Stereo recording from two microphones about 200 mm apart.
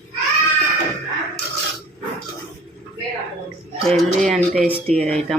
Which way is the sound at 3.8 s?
Centre (ahead or behind).